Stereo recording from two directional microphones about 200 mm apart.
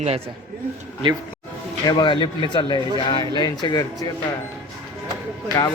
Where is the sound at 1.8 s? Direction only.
25° left (ahead or behind).